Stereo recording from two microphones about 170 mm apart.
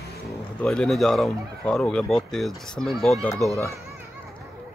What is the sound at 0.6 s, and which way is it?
Speech, 5° left (ahead or behind).